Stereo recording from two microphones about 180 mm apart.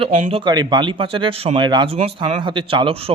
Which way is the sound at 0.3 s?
30° right (ahead or behind).